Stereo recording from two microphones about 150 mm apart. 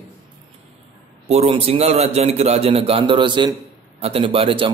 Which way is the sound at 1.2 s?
45° right (ahead or behind).